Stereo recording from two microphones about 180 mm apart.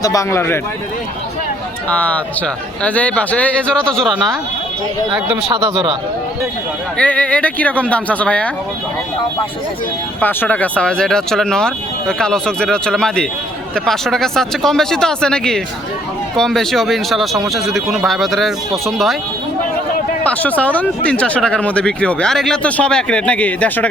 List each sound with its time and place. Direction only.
0.0 s speech: 20° left (ahead or behind)
1.9 s speech: 10° left (ahead or behind)
5.5 s a man's voice: 30° right (ahead or behind)
6.9 s speech: 5° left (ahead or behind)
10.2 s speech: 10° left (ahead or behind)
20.2 s speech: 10° left (ahead or behind)